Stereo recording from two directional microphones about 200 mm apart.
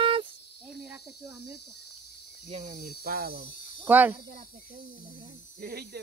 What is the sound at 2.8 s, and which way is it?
Speech, 50° right (ahead or behind).